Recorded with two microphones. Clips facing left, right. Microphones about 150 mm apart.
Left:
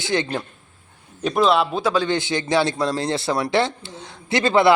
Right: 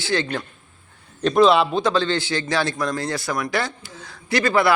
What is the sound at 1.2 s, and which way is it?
A man's voice, 5° left (ahead or behind).